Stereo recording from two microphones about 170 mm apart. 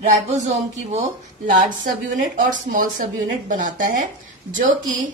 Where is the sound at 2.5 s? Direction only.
50° right (ahead or behind).